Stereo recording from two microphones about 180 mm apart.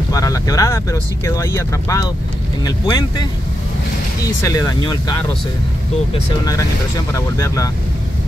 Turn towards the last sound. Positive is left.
turn(degrees=20)  # may be behind; listen again after turning